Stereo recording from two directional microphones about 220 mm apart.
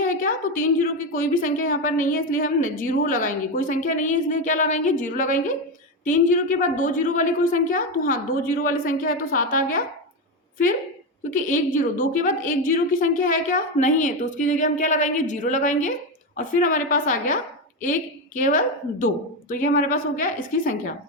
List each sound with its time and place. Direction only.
0.0 s a woman's voice: 40° left (ahead or behind)
11.3 s a woman's voice: 35° left (ahead or behind)